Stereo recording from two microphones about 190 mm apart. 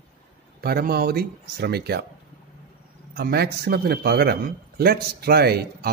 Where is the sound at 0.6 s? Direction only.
55° right (ahead or behind).